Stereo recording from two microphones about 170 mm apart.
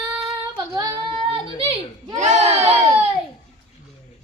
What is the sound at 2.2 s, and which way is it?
Crowd, 40° right (ahead or behind).